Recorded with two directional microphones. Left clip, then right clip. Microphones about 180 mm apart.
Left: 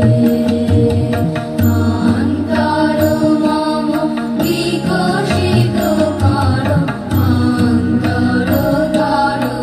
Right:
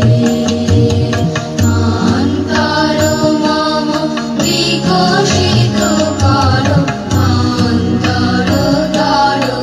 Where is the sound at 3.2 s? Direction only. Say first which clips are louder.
Right 2 dB; 40° right (ahead or behind).